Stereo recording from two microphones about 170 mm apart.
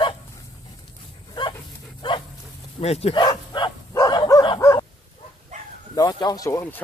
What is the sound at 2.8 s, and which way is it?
Bow-wow, 35° left (ahead or behind).